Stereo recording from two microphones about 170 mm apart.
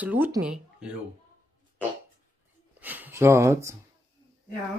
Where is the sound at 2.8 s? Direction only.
10° right (ahead or behind).